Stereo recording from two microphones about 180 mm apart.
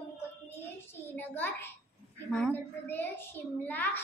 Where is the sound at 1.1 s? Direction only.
10° left (ahead or behind).